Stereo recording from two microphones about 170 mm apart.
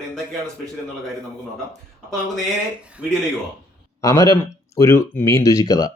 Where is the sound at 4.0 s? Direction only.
20° left (ahead or behind).